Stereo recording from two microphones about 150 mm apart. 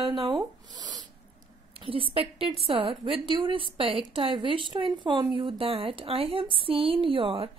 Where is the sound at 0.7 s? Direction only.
25° right (ahead or behind).